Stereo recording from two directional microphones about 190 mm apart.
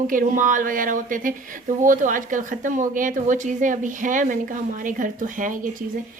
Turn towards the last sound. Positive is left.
turn(degrees=-45)  # may be behind; listen again after turning